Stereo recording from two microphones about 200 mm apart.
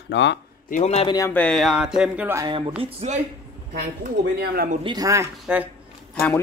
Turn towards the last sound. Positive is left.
turn(degrees=10)  # may be behind; listen again after turning